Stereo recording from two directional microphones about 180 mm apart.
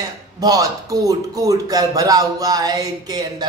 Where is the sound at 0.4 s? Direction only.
20° right (ahead or behind).